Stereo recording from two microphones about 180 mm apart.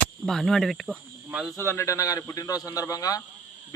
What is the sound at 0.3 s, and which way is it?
A man's voice, centre (ahead or behind).